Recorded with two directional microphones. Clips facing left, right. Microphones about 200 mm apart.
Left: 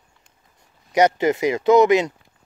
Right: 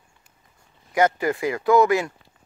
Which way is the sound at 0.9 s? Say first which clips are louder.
Left 4 dB; 20° left (ahead or behind).